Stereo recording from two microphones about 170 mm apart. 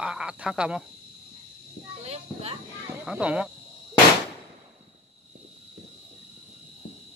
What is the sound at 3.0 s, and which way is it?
Speech, 5° right (ahead or behind).